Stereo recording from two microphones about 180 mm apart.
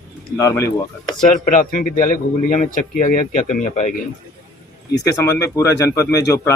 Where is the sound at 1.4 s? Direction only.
50° left (ahead or behind).